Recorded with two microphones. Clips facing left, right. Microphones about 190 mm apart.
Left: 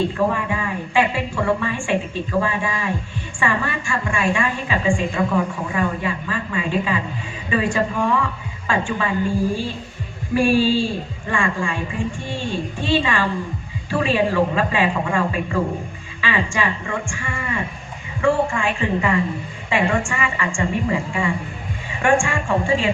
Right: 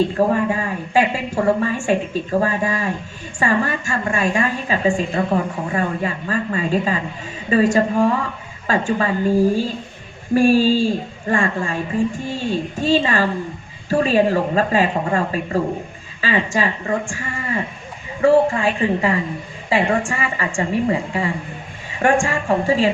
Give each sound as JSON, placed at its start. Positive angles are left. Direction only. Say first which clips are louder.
{"t": 0.2, "sound": "a woman's voice", "louder": "right 4 dB", "side_deg": -40}